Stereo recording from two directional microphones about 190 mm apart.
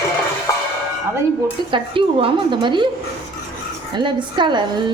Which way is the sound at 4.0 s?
25° right (ahead or behind).